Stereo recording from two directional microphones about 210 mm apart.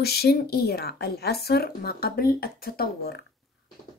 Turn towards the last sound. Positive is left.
turn(degrees=50)  # may be behind; listen again after turning